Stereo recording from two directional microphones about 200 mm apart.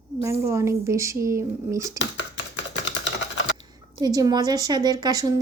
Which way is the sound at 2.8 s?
65° left (ahead or behind).